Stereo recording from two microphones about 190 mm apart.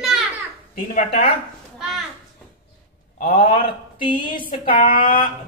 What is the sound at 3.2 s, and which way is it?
Speech, 45° left (ahead or behind).